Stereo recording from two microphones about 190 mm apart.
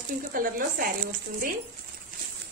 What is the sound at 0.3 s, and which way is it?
Speech, 50° right (ahead or behind).